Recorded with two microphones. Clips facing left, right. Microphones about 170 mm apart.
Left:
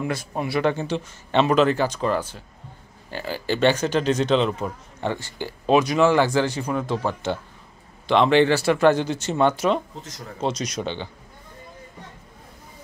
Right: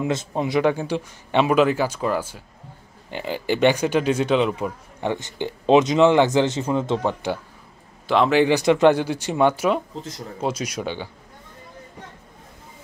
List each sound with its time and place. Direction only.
0.0 s speech: 20° right (ahead or behind)
3.1 s speech: 20° right (ahead or behind)
8.1 s speech: 5° right (ahead or behind)